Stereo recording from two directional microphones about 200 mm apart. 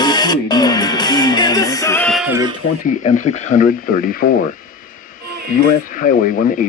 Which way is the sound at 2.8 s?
40° left (ahead or behind).